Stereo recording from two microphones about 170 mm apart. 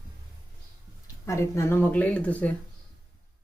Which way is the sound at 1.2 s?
15° left (ahead or behind).